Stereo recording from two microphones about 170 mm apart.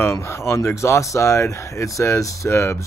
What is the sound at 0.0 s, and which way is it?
Speech, 15° left (ahead or behind).